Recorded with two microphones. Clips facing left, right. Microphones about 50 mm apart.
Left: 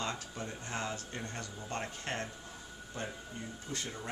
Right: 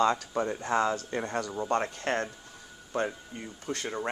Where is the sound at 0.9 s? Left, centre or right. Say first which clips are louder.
Right 10 dB; right.